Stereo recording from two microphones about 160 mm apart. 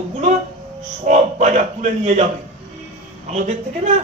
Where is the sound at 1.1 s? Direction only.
50° right (ahead or behind).